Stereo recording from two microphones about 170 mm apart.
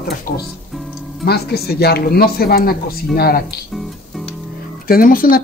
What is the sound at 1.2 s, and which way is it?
Speech, 65° left (ahead or behind).